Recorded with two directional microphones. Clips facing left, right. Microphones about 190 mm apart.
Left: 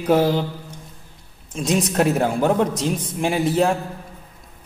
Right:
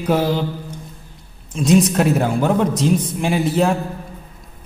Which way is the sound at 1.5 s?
40° left (ahead or behind).